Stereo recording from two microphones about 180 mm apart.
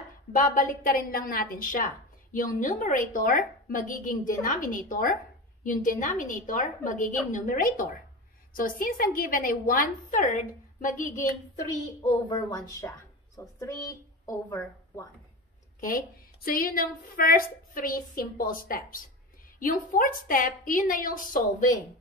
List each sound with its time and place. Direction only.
0.3 s a woman's voice: 45° left (ahead or behind)
12.0 s a woman's voice: 35° left (ahead or behind)
12.4 s a woman's voice: 20° left (ahead or behind)
16.4 s a woman's voice: 55° left (ahead or behind)